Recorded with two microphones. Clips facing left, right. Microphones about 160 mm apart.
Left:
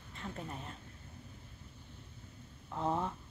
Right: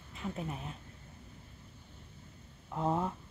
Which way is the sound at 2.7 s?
5° right (ahead or behind).